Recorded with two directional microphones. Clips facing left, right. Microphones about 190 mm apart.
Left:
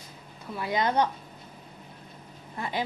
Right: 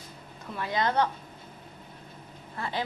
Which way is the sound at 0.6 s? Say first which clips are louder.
Left 1 dB; 15° left (ahead or behind).